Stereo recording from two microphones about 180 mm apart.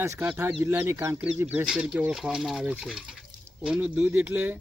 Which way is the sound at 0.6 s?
15° right (ahead or behind).